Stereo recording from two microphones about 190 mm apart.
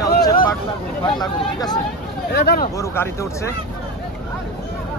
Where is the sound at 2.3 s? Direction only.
55° left (ahead or behind).